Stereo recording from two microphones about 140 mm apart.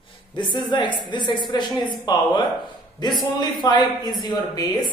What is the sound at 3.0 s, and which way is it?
A woman's voice, 30° left (ahead or behind).